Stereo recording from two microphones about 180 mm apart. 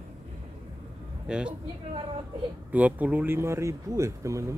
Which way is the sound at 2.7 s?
10° right (ahead or behind).